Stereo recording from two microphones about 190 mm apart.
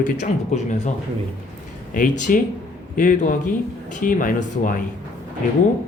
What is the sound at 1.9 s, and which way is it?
Speech, 45° left (ahead or behind).